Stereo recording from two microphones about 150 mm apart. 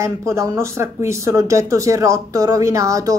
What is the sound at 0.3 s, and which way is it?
Speech, 20° right (ahead or behind).